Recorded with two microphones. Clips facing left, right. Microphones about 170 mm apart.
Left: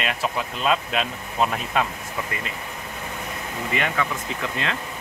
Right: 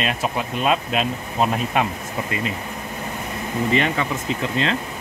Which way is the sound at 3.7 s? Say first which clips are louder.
Right 3 dB; 25° right (ahead or behind).